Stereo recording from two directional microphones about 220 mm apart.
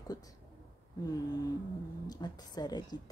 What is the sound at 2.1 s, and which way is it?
Speech, 20° left (ahead or behind).